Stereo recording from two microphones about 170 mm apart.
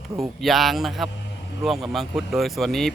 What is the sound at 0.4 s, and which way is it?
Speech, centre (ahead or behind).